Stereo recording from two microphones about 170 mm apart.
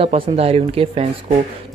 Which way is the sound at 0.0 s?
35° right (ahead or behind).